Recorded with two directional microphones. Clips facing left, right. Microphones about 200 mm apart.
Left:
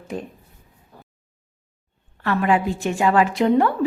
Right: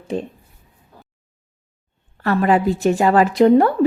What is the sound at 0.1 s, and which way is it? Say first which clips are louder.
Speech: right 6 dB; 25° right (ahead or behind).